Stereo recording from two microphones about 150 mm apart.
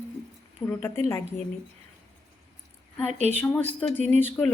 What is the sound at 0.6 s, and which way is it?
Speech, 25° left (ahead or behind).